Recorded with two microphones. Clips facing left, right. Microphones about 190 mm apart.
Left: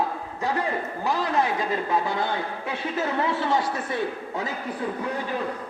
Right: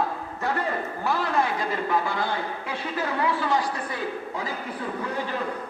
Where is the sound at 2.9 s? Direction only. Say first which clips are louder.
Even; 25° left (ahead or behind).